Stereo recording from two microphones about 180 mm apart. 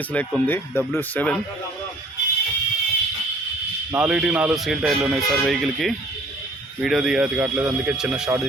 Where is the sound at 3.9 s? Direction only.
5° right (ahead or behind).